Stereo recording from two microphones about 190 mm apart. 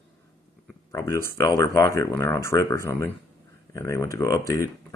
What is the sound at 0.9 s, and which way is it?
Speech, 15° left (ahead or behind).